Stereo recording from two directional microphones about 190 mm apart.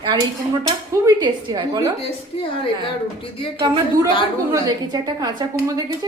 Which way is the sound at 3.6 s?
25° right (ahead or behind).